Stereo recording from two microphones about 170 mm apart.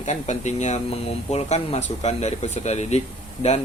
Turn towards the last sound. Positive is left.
turn(degrees=40)  # may be behind; listen again after turning